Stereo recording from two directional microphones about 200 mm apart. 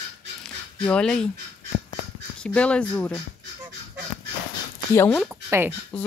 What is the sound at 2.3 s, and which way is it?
Speech, 5° left (ahead or behind).